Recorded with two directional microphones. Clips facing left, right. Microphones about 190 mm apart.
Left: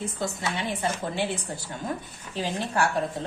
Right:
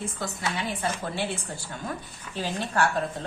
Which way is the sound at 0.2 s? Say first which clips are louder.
Left 2 dB; 25° left (ahead or behind).